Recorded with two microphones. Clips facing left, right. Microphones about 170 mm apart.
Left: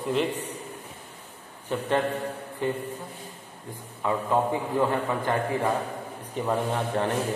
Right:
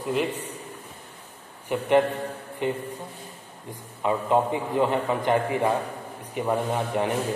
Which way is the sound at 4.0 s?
15° right (ahead or behind).